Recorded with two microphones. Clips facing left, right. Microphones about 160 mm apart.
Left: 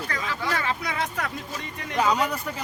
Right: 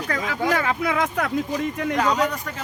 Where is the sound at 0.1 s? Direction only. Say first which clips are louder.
Right 7 dB; 50° right (ahead or behind); by 1.1 s 75° right (ahead or behind).